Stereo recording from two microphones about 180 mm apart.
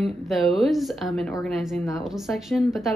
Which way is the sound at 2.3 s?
Centre (ahead or behind).